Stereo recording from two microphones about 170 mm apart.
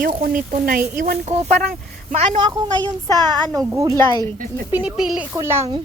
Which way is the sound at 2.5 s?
20° right (ahead or behind).